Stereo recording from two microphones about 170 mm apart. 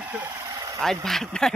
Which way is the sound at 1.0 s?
Centre (ahead or behind).